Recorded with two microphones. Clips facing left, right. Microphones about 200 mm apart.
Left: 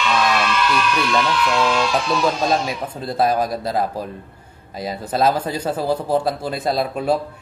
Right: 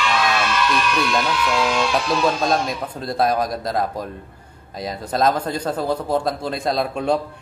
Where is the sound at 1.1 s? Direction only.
5° left (ahead or behind).